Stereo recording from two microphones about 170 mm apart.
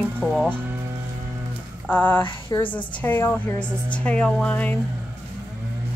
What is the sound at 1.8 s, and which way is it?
Speech, 10° left (ahead or behind).